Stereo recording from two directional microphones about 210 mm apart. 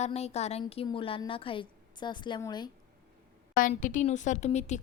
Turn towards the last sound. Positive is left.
turn(degrees=35)  # may be behind; listen again after turning